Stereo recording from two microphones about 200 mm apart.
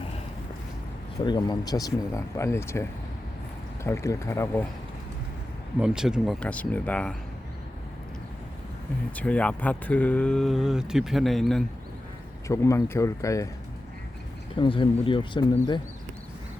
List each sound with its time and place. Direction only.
1.2 s speech: 20° left (ahead or behind)
3.8 s speech: 15° left (ahead or behind)
5.8 s speech: 5° right (ahead or behind)
9.1 s speech: 5° left (ahead or behind)
12.5 s speech: 15° left (ahead or behind)
14.5 s speech: 25° left (ahead or behind)